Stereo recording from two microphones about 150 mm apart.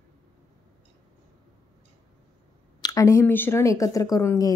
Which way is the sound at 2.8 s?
25° left (ahead or behind).